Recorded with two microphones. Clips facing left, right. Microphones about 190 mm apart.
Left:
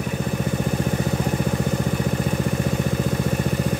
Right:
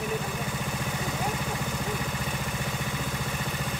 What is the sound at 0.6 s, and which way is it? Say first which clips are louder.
Vehicle: left 9 dB; 45° left (ahead or behind).